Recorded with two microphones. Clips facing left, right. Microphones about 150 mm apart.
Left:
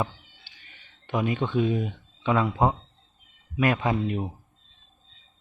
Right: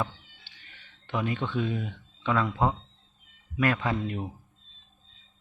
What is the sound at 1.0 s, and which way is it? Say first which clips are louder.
Speech: left 4 dB; 15° left (ahead or behind).